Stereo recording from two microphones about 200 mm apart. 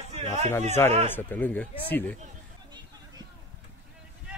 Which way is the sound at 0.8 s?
15° left (ahead or behind).